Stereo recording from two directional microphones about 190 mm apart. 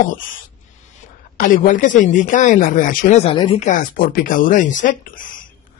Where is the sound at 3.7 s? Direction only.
45° left (ahead or behind).